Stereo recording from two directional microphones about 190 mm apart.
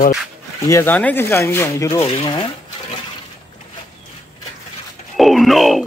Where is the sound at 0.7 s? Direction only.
15° left (ahead or behind).